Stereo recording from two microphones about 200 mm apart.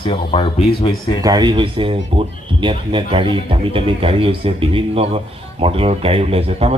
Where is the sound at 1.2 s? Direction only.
20° right (ahead or behind).